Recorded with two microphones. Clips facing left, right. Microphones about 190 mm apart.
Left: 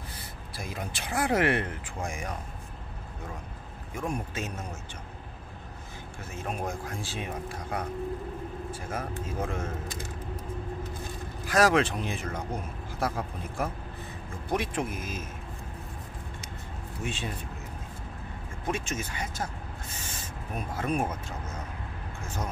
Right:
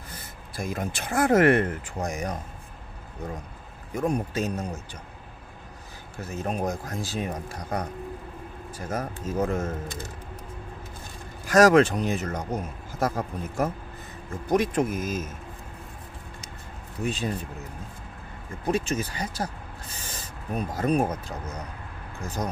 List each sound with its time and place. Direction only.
0.6 s speech: 45° right (ahead or behind)
3.9 s speech: 40° right (ahead or behind)
6.1 s speech: 40° right (ahead or behind)
11.4 s speech: 45° right (ahead or behind)
17.0 s speech: 40° right (ahead or behind)
18.7 s speech: 35° right (ahead or behind)
22.2 s speech: 35° right (ahead or behind)